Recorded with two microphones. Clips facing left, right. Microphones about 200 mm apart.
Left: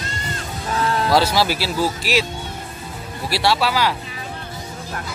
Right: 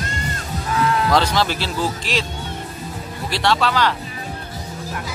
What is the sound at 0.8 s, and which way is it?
Music, 35° left (ahead or behind).